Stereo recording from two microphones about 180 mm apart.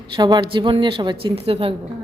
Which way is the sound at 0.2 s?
25° right (ahead or behind).